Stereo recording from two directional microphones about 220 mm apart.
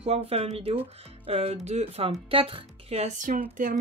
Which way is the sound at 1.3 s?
25° right (ahead or behind).